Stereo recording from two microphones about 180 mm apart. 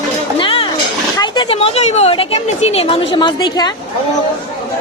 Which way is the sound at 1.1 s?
25° left (ahead or behind).